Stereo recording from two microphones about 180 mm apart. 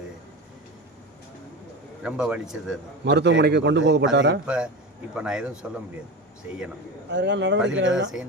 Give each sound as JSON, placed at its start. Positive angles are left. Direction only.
{"t": 2.0, "sound": "speech", "side_deg": -5}
{"t": 3.0, "sound": "a man's voice", "side_deg": -70}
{"t": 4.4, "sound": "speech", "side_deg": -5}
{"t": 7.1, "sound": "a man's voice", "side_deg": -75}
{"t": 7.8, "sound": "speech", "side_deg": -90}